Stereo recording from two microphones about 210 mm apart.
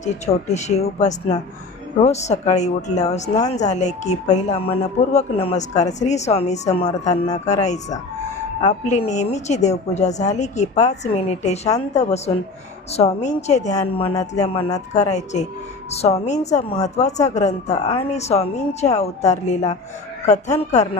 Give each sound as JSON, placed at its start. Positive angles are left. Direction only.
{"t": 0.0, "sound": "speech", "side_deg": 30}